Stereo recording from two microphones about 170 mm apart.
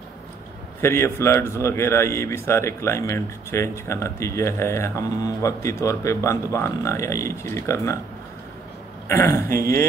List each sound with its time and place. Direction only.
0.7 s a man's voice: 15° left (ahead or behind)
9.1 s a man's voice: 15° left (ahead or behind)